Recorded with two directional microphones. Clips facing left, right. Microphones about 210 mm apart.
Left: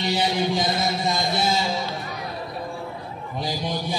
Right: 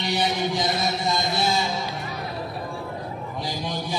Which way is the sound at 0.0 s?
25° left (ahead or behind).